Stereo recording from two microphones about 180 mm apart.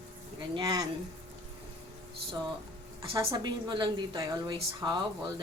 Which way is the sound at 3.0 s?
25° right (ahead or behind).